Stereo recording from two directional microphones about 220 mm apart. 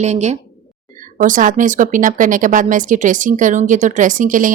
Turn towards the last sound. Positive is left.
turn(degrees=-35)  # may be behind; listen again after turning